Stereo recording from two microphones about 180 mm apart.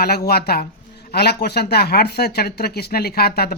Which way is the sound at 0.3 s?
60° left (ahead or behind).